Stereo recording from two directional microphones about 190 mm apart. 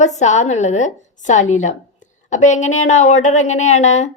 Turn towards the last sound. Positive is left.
turn(degrees=35)  # may be behind; listen again after turning